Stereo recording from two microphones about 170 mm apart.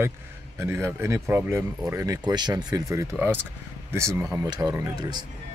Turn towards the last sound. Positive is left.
turn(degrees=-25)  # may be behind; listen again after turning